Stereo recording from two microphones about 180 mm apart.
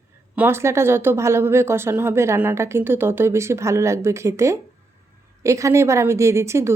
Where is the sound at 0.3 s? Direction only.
15° right (ahead or behind).